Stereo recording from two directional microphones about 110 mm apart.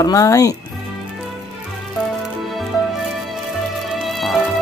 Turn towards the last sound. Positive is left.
turn(degrees=0)  # may be behind; listen again after turning